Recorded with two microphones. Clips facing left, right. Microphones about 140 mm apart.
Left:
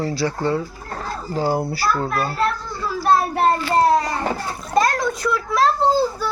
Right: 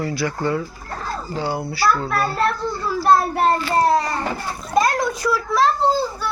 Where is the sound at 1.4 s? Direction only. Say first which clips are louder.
Left 4 dB; 45° left (ahead or behind).